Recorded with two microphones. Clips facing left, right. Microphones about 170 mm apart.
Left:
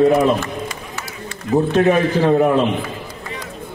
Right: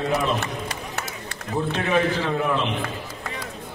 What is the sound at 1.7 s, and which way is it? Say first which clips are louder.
Speech: left 6 dB; 45° left (ahead or behind).